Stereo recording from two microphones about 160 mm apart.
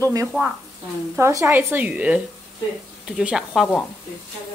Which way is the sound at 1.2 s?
15° right (ahead or behind).